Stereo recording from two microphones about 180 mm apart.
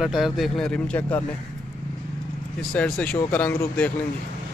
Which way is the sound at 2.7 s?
5° left (ahead or behind).